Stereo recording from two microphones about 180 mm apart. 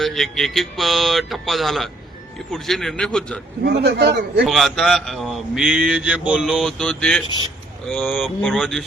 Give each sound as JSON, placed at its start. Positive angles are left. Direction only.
{"t": 0.0, "sound": "speech", "side_deg": 0}
{"t": 3.6, "sound": "a man's voice", "side_deg": -65}
{"t": 4.4, "sound": "speech", "side_deg": 0}